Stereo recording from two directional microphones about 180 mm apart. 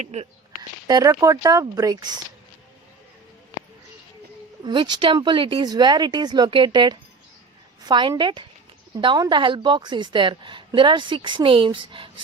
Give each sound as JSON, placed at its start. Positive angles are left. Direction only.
{"t": 0.0, "sound": "speech", "side_deg": -35}
{"t": 0.9, "sound": "a woman's voice", "side_deg": -20}
{"t": 4.6, "sound": "a woman's voice", "side_deg": -25}